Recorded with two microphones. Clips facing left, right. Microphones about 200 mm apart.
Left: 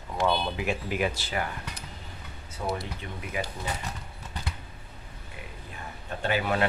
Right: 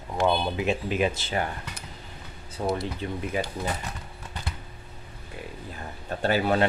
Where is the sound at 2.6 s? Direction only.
35° right (ahead or behind).